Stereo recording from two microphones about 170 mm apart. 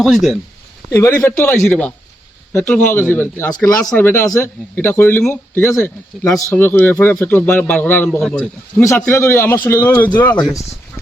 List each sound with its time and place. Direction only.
0.0 s speech: centre (ahead or behind)
0.9 s speech: 15° left (ahead or behind)
9.0 s speech: 15° left (ahead or behind)